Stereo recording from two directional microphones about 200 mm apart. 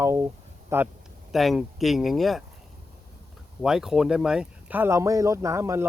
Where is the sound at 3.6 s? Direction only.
Centre (ahead or behind).